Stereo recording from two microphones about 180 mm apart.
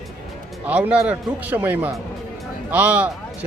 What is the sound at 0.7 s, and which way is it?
Speech, 5° right (ahead or behind).